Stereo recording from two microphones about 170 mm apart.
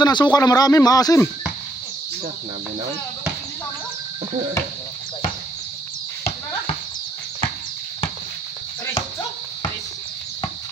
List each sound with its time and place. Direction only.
0.0 s speech: 25° left (ahead or behind)